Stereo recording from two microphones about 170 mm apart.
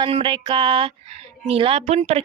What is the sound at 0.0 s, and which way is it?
Speech, 30° right (ahead or behind).